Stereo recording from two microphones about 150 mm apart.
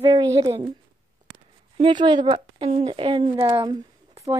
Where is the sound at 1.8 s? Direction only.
30° right (ahead or behind).